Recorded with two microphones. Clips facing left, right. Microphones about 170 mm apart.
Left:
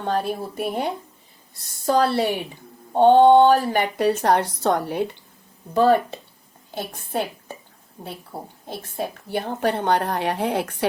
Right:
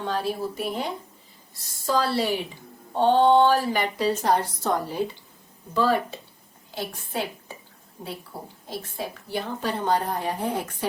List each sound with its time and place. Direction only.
0.0 s a woman's voice: 50° left (ahead or behind)
8.3 s a woman's voice: 25° left (ahead or behind)
8.7 s a woman's voice: 55° left (ahead or behind); by 10.8 s 70° left (ahead or behind)